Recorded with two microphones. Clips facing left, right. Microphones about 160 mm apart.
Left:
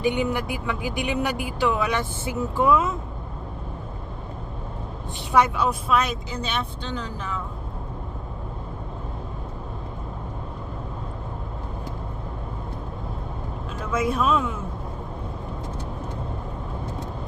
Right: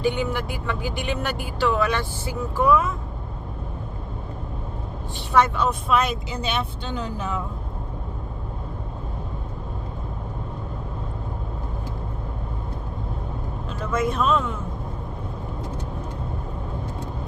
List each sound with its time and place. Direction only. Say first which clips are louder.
0.0 s speech: left 1 dB; 15° left (ahead or behind)
5.3 s speech: even; 10° left (ahead or behind)
5.9 s speech: right 1 dB; centre (ahead or behind)
6.9 s speech: right 4 dB; 10° right (ahead or behind)
13.9 s speech: even; 5° left (ahead or behind)